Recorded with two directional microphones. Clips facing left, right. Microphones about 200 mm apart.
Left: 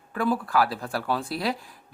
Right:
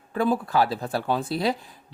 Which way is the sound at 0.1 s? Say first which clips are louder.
Right 2 dB; 25° right (ahead or behind).